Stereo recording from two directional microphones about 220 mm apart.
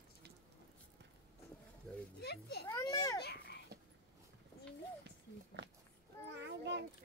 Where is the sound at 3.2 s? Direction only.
50° left (ahead or behind).